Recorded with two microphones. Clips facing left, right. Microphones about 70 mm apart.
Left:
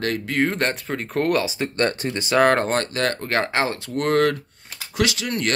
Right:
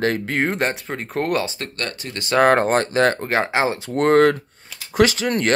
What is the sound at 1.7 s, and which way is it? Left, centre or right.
Speech, left.